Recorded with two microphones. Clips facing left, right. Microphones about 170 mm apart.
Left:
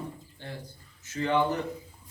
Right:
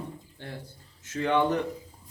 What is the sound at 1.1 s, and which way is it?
Speech, 60° right (ahead or behind).